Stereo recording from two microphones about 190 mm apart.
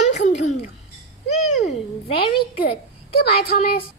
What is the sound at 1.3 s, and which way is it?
Owl, 40° left (ahead or behind).